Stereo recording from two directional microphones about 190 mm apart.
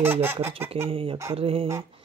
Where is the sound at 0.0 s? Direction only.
10° right (ahead or behind).